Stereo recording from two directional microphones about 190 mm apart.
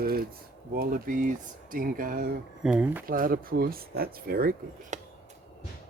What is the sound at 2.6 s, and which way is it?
Speech, 5° right (ahead or behind).